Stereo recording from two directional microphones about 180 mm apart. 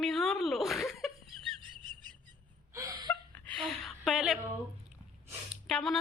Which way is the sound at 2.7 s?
20° right (ahead or behind).